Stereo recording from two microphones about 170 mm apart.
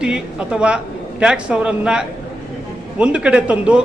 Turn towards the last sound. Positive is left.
turn(degrees=-5)  # may be behind; listen again after turning